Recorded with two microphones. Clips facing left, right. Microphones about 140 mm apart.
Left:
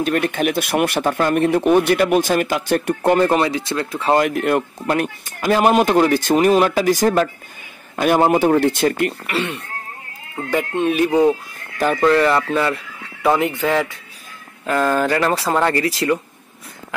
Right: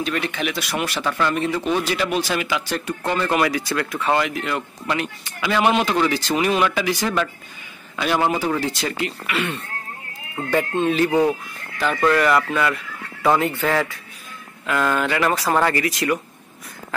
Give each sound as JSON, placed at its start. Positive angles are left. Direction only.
{"t": 0.0, "sound": "speech", "side_deg": 50}
{"t": 3.3, "sound": "speech", "side_deg": 25}
{"t": 4.2, "sound": "speech", "side_deg": 55}
{"t": 10.5, "sound": "speech", "side_deg": 15}
{"t": 12.0, "sound": "speech", "side_deg": 30}
{"t": 13.4, "sound": "speech", "side_deg": 20}
{"t": 14.7, "sound": "speech", "side_deg": 35}